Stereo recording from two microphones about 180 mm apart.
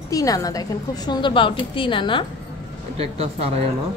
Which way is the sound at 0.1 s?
20° left (ahead or behind).